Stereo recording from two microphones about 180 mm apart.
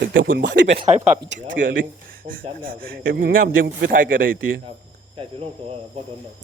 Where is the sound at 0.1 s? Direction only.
90° right.